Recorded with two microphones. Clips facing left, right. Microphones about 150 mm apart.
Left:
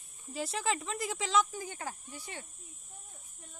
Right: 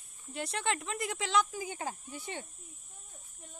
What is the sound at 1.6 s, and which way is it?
Speech, 15° right (ahead or behind).